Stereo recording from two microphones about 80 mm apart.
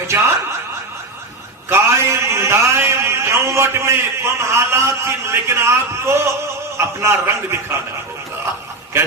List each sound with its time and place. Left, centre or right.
0.1 s chuckle: right
1.7 s a man's voice: right